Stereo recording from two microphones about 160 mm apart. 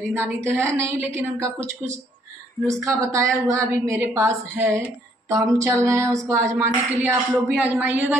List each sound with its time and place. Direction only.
0.1 s a woman's voice: 15° right (ahead or behind)